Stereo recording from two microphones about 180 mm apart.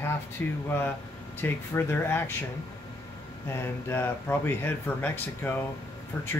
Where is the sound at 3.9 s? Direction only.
10° left (ahead or behind).